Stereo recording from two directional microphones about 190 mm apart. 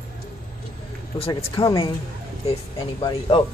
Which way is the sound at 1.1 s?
30° left (ahead or behind).